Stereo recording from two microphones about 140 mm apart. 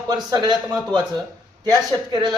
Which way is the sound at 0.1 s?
30° right (ahead or behind).